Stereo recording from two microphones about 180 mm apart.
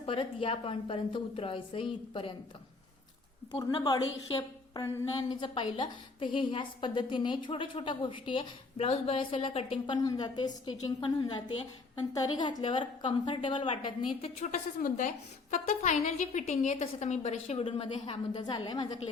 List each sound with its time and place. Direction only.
0.0 s a woman's voice: 30° left (ahead or behind)
3.6 s a woman's voice: 25° left (ahead or behind)
9.8 s a woman's voice: 20° left (ahead or behind)